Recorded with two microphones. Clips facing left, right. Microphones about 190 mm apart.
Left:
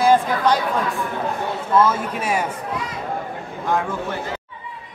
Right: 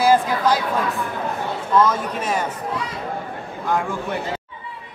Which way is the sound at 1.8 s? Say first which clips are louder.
Even; 10° left (ahead or behind).